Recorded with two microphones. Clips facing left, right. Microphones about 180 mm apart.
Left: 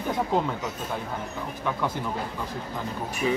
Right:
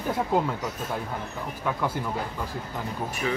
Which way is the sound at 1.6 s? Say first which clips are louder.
Right 1 dB; 10° right (ahead or behind).